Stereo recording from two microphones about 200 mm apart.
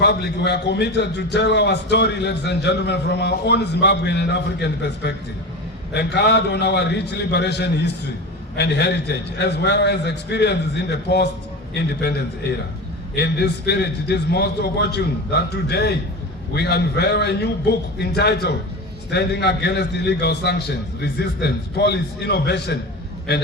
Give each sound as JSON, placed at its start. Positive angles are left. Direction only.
{"t": 0.0, "sound": "a man's voice", "side_deg": 55}